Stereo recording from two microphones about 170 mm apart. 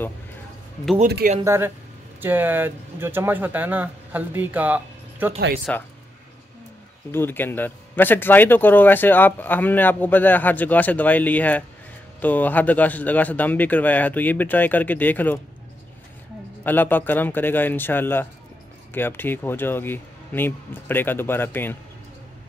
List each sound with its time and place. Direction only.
1.0 s speech: 65° right (ahead or behind)
1.4 s speech: 15° right (ahead or behind)
5.7 s speech: 5° left (ahead or behind)
7.1 s speech: 15° left (ahead or behind)
16.6 s speech: 10° left (ahead or behind)